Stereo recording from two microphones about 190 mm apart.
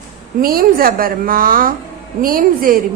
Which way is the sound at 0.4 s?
50° right (ahead or behind).